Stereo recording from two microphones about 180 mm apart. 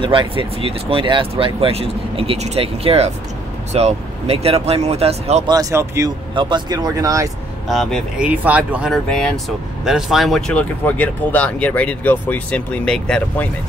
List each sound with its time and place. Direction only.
0.0 s speech: 30° right (ahead or behind)
5.5 s speech: 20° right (ahead or behind)
7.6 s speech: centre (ahead or behind)